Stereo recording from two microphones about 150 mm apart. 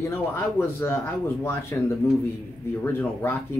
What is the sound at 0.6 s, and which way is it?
Speech, 15° left (ahead or behind).